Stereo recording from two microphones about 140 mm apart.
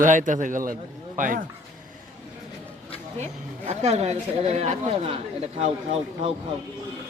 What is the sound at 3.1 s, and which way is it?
A woman's voice, 50° right (ahead or behind).